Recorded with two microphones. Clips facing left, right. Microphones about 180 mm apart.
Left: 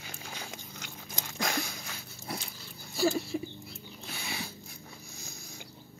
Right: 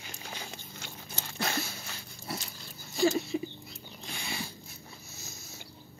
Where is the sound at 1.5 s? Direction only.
5° right (ahead or behind).